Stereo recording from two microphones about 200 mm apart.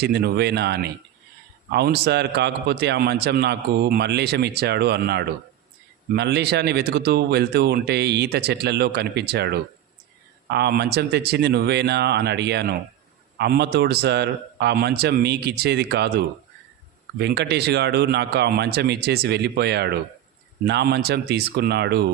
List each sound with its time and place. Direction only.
0.0 s a man's voice: 55° right (ahead or behind)